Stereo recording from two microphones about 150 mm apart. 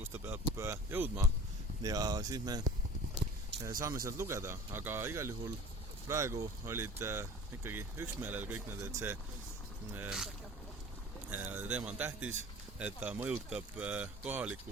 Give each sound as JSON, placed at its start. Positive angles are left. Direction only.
{"t": 0.1, "sound": "speech", "side_deg": -15}
{"t": 11.3, "sound": "speech", "side_deg": -10}